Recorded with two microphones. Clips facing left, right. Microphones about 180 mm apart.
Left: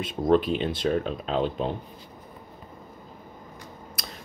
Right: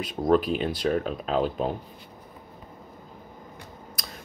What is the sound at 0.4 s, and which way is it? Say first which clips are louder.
Speech: even; 5° right (ahead or behind).